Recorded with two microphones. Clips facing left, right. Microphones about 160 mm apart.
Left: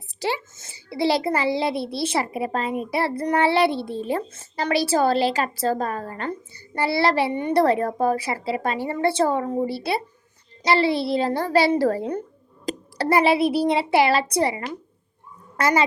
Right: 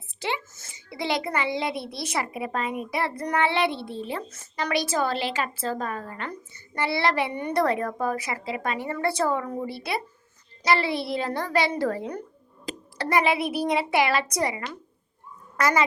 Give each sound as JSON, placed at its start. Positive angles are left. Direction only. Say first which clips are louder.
{"t": 0.1, "sound": "a sound", "louder": "left 4 dB", "side_deg": 35}
{"t": 0.5, "sound": "a woman's voice", "louder": "left 7 dB", "side_deg": 25}
{"t": 4.3, "sound": "a woman's voice", "louder": "left 4 dB", "side_deg": 30}